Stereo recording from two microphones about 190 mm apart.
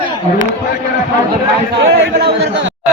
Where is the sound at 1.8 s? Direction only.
60° right (ahead or behind).